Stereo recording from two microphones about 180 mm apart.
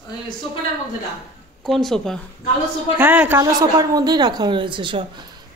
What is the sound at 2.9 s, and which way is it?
Speech, 10° right (ahead or behind).